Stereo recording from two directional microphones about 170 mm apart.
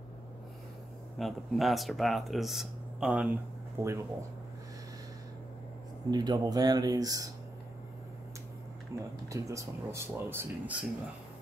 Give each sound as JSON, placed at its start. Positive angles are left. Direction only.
{"t": 1.1, "sound": "speech", "side_deg": 0}
{"t": 3.8, "sound": "speech", "side_deg": -15}
{"t": 6.0, "sound": "speech", "side_deg": -25}
{"t": 8.9, "sound": "speech", "side_deg": -20}